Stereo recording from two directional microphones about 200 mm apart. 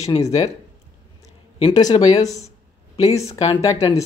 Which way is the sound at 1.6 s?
20° left (ahead or behind).